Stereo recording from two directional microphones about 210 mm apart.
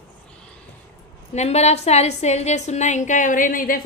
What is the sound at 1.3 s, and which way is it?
A woman's voice, 30° left (ahead or behind).